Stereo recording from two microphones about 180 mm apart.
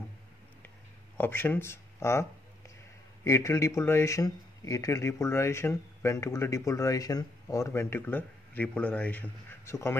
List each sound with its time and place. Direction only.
1.1 s speech: 10° left (ahead or behind)
3.3 s speech: 15° left (ahead or behind)